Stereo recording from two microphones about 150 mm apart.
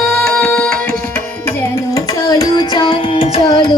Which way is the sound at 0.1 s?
5° left (ahead or behind).